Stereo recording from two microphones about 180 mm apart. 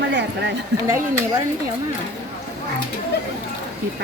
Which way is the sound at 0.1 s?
75° right (ahead or behind).